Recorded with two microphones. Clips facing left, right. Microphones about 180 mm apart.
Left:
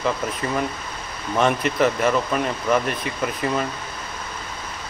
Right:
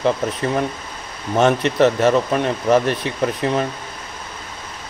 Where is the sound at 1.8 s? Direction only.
30° right (ahead or behind).